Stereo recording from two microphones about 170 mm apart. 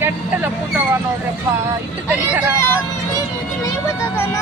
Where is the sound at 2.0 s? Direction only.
10° right (ahead or behind).